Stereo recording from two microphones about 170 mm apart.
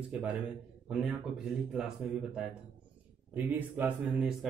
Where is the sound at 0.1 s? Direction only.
10° right (ahead or behind).